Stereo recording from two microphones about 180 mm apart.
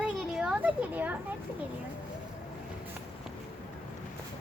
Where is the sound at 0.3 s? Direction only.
5° right (ahead or behind).